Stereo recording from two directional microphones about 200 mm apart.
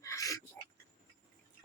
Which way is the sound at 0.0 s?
15° left (ahead or behind).